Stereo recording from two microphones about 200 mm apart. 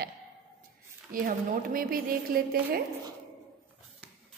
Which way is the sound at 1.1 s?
45° right (ahead or behind).